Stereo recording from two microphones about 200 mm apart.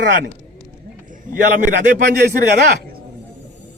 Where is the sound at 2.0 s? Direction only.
55° right (ahead or behind).